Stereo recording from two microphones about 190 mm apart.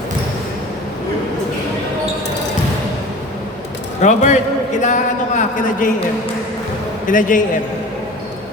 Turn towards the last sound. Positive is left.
turn(degrees=45)  # may be behind; listen again after turning